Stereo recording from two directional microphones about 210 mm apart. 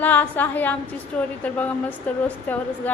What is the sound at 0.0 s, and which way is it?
A woman's voice, 10° left (ahead or behind).